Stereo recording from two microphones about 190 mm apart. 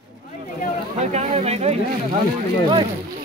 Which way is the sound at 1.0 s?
35° right (ahead or behind).